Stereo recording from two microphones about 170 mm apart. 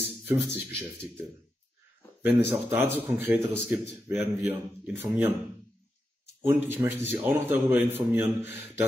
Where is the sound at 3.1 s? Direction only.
10° right (ahead or behind).